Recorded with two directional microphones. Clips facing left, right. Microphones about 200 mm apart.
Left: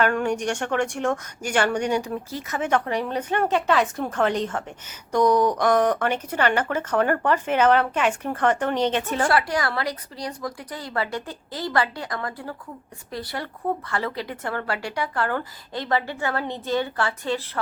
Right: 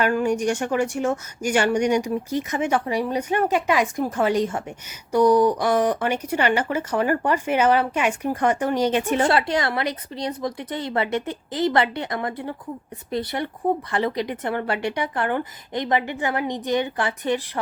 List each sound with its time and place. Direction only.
0.0 s a woman's voice: 5° right (ahead or behind)